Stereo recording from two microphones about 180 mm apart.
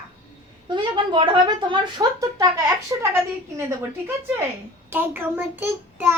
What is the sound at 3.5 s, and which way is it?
A child's voice, 15° right (ahead or behind).